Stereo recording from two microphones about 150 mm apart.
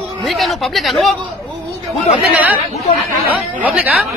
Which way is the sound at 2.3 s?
10° right (ahead or behind).